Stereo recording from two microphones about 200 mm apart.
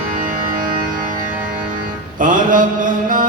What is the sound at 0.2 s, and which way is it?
Music, 45° right (ahead or behind).